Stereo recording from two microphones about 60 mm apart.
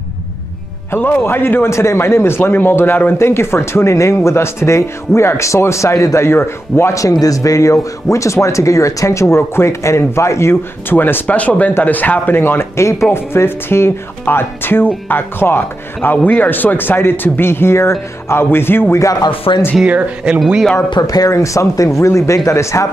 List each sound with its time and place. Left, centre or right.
0.9 s speech: left
6.9 s speech: left
10.9 s speech: left
18.9 s speech: left
20.3 s speech: centre
21.1 s speech: left